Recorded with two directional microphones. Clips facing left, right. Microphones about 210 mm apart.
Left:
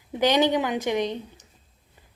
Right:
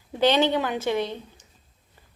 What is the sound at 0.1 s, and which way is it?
Speech, 15° left (ahead or behind).